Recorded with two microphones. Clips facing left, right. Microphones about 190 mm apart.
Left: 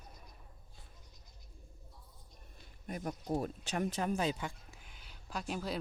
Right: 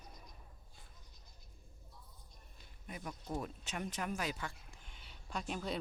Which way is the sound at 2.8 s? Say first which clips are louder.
Left 7 dB; 45° left (ahead or behind).